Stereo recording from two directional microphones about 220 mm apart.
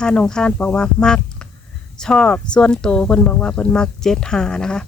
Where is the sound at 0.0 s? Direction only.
5° left (ahead or behind).